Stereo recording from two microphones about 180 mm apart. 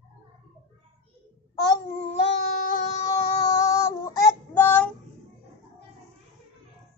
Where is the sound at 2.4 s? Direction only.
45° left (ahead or behind).